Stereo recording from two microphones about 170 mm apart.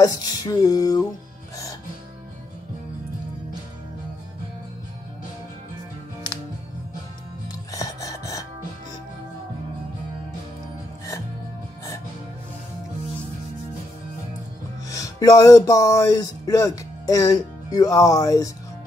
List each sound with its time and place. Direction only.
0.0 s music: 20° left (ahead or behind)
7.7 s music: 20° left (ahead or behind)
14.9 s speech: 20° left (ahead or behind)